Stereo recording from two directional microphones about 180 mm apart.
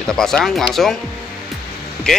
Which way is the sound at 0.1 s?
5° left (ahead or behind).